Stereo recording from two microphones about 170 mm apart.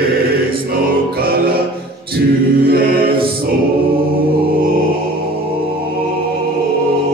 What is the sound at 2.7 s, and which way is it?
Mantra, 60° right (ahead or behind).